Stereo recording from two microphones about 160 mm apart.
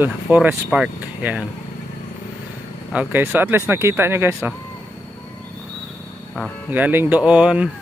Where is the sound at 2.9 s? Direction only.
10° right (ahead or behind).